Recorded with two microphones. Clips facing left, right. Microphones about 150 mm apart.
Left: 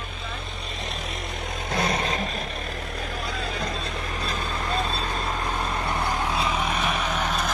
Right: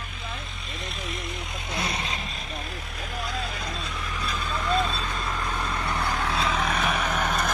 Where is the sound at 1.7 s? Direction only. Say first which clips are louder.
Left 6 dB; 60° left (ahead or behind).